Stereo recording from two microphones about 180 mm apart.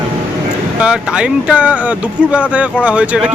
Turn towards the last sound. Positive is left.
turn(degrees=-5)  # may be behind; listen again after turning